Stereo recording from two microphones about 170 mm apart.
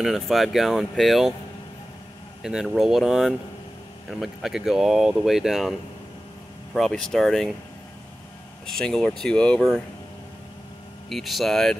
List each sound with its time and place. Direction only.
0.0 s speech: centre (ahead or behind)
2.4 s speech: centre (ahead or behind)
8.6 s speech: 5° left (ahead or behind)
11.1 s speech: centre (ahead or behind)